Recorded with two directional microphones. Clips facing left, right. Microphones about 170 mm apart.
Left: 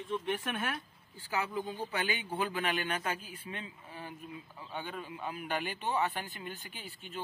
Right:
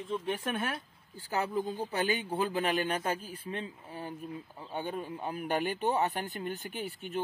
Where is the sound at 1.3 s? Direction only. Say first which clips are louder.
Right 3 dB; 45° right (ahead or behind).